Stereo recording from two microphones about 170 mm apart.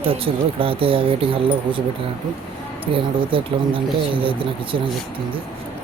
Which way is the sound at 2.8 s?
30° right (ahead or behind).